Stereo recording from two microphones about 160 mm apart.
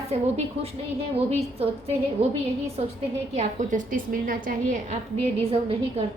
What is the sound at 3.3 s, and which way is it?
A woman's voice, 50° right (ahead or behind).